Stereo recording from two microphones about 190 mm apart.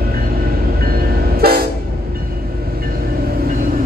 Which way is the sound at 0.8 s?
55° right (ahead or behind).